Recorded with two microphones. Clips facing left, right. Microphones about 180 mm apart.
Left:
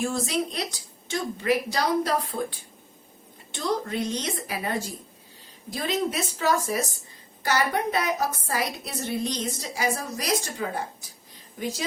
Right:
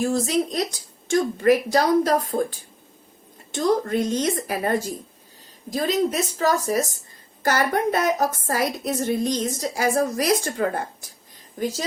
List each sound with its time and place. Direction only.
0.0 s a woman's voice: 40° right (ahead or behind)